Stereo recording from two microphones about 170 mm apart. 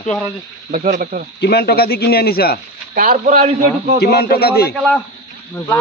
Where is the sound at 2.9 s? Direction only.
60° right (ahead or behind).